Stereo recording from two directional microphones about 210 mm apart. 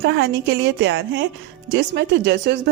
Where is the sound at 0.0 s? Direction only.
55° right (ahead or behind).